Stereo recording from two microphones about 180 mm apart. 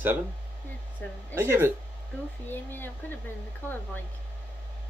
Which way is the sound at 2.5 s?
10° left (ahead or behind).